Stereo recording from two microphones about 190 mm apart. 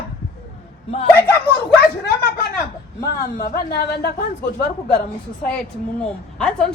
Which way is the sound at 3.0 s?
50° left (ahead or behind).